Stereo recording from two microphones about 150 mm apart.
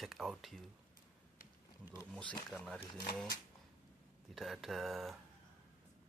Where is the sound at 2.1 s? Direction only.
5° left (ahead or behind).